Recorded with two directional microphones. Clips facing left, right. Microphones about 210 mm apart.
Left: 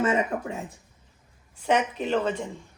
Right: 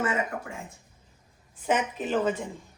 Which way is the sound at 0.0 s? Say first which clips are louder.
Left 4 dB; 25° left (ahead or behind).